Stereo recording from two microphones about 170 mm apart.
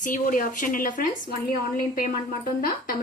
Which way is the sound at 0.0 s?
50° left (ahead or behind).